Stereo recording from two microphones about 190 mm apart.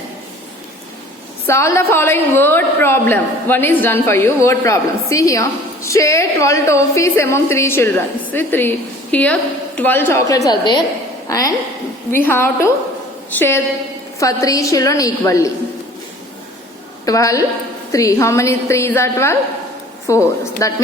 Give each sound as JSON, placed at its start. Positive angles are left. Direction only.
{"t": 1.5, "sound": "a woman's voice", "side_deg": 15}
{"t": 14.2, "sound": "a woman's voice", "side_deg": 20}
{"t": 17.1, "sound": "a woman's voice", "side_deg": 15}